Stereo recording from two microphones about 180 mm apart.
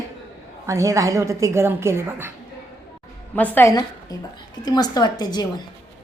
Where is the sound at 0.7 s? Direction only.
15° right (ahead or behind).